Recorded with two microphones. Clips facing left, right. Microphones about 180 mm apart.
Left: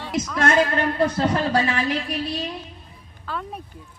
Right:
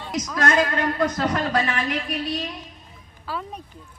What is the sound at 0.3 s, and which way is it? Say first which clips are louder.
A woman's voice: left 1 dB; 30° left (ahead or behind).